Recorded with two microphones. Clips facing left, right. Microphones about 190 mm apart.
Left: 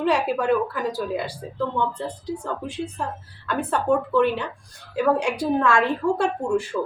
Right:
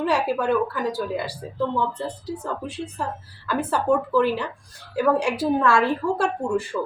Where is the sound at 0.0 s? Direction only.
Centre (ahead or behind).